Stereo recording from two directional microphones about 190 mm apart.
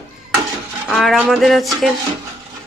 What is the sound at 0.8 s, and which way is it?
Speech, centre (ahead or behind).